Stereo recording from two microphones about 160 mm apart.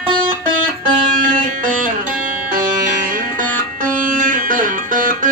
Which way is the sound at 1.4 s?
55° right (ahead or behind).